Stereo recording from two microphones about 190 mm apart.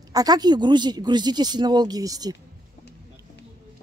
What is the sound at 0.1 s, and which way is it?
Speech, 20° right (ahead or behind).